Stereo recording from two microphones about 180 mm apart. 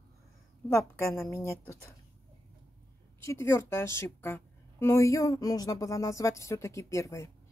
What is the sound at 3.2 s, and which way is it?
A woman's voice, 15° left (ahead or behind).